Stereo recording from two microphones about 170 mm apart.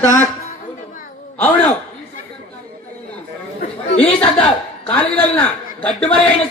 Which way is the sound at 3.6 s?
40° left (ahead or behind).